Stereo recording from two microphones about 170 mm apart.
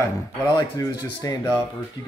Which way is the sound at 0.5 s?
20° left (ahead or behind).